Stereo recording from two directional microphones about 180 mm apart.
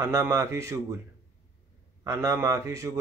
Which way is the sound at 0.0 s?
15° right (ahead or behind).